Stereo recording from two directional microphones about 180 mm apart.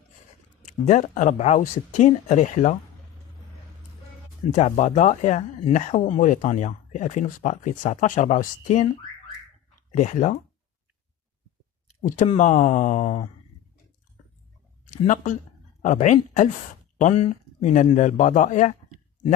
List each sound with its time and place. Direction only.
0.8 s speech: 40° left (ahead or behind)
4.5 s speech: 40° left (ahead or behind)
9.8 s speech: 40° left (ahead or behind)
12.4 s speech: 45° left (ahead or behind)
14.9 s speech: 45° left (ahead or behind)